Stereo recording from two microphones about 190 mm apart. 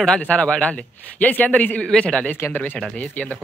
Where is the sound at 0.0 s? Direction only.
5° left (ahead or behind).